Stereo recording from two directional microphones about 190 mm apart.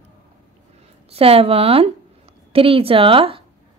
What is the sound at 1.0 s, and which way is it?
Speech, 30° right (ahead or behind).